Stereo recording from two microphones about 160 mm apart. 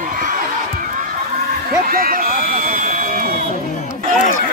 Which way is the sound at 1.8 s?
65° right (ahead or behind).